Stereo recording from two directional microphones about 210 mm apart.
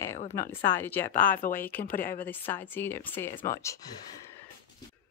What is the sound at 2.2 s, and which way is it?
Speech, 10° left (ahead or behind).